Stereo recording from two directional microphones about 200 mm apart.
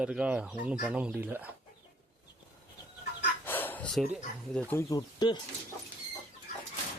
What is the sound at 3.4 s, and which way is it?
Bow-wow, 10° left (ahead or behind).